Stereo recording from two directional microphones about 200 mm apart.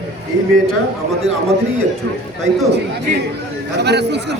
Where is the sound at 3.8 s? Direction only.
55° right (ahead or behind).